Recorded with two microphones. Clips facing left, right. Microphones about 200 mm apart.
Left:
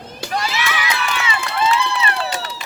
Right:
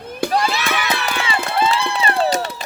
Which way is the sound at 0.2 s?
55° right (ahead or behind).